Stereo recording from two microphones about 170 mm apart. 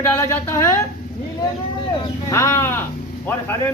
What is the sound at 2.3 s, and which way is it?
Speech, 15° left (ahead or behind).